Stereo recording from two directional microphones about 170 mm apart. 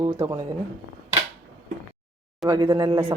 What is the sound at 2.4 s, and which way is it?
Speech, 25° right (ahead or behind).